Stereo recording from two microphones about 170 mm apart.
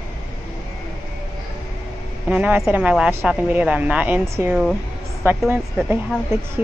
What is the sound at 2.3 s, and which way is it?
Speech, 10° right (ahead or behind).